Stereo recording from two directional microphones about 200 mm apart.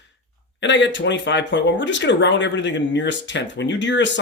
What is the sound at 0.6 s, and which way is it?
Speech, 60° left (ahead or behind).